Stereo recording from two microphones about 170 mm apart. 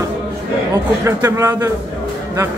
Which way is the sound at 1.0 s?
15° right (ahead or behind).